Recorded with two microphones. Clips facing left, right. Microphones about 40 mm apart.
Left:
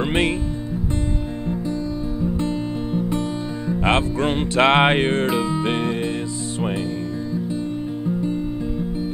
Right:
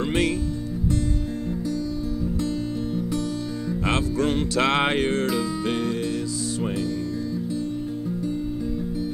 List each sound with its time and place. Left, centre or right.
2.4 s music: left